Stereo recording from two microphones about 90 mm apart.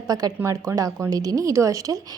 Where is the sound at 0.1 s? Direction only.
45° right (ahead or behind).